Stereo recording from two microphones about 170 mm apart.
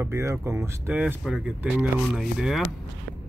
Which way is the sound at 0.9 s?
5° right (ahead or behind).